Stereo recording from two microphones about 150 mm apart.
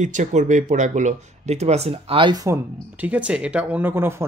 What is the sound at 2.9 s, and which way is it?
Speech, 10° right (ahead or behind).